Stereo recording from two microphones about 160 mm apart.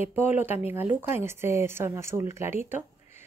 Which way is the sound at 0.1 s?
10° right (ahead or behind).